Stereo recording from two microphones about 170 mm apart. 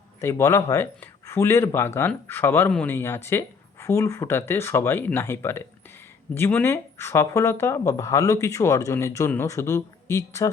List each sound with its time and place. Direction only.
0.2 s speech: 15° left (ahead or behind)